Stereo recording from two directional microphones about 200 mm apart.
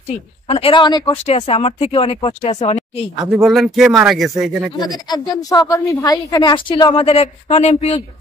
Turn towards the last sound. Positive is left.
turn(degrees=30)  # may be behind; listen again after turning